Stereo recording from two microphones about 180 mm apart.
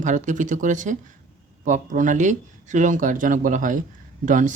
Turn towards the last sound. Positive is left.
turn(degrees=-45)  # may be behind; listen again after turning